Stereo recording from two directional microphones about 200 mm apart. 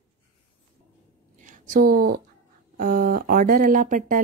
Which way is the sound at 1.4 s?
40° right (ahead or behind).